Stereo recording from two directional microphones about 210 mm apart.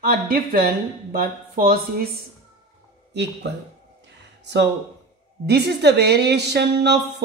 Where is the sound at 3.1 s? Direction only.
55° right (ahead or behind).